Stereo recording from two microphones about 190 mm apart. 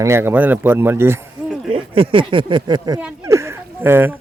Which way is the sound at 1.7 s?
30° right (ahead or behind).